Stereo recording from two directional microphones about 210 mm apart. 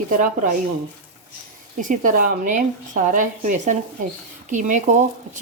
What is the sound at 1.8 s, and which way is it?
Speech, 40° right (ahead or behind).